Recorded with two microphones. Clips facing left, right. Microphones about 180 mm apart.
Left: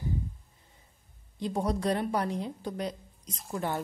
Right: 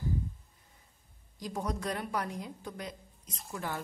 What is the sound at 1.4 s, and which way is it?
A woman's voice, 30° left (ahead or behind).